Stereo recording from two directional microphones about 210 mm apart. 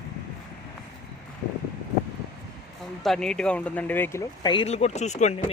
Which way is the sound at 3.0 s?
Centre (ahead or behind).